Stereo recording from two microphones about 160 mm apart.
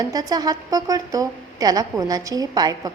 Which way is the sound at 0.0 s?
25° right (ahead or behind).